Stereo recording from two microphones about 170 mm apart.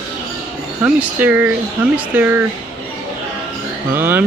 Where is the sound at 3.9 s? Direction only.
10° right (ahead or behind).